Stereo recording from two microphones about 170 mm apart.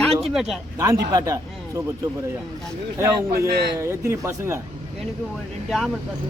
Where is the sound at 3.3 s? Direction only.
70° right (ahead or behind).